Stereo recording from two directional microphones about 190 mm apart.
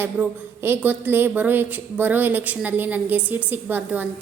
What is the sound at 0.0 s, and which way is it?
A woman's voice, 10° right (ahead or behind).